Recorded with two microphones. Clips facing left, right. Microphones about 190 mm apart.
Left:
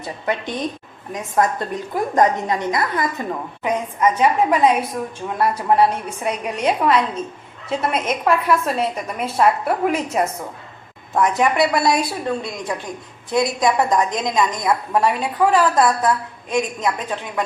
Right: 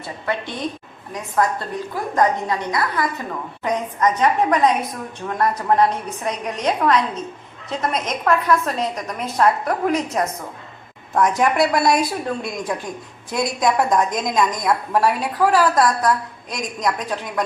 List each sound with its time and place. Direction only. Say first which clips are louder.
0.0 s a woman's voice: left 2 dB; 20° left (ahead or behind)
3.6 s a woman's voice: left 1 dB; 10° left (ahead or behind)
11.1 s a woman's voice: even; centre (ahead or behind)